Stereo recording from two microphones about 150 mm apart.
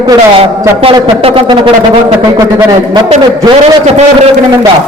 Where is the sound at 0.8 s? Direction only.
40° right (ahead or behind).